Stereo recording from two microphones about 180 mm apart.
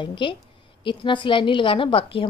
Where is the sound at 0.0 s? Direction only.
25° left (ahead or behind).